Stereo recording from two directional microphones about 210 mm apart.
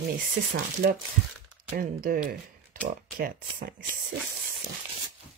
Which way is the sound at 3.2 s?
40° right (ahead or behind).